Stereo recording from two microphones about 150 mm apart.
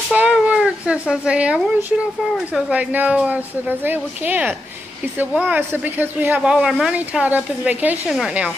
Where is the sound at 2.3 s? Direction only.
5° right (ahead or behind).